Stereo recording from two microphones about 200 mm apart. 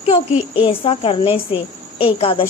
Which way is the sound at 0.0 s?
30° left (ahead or behind).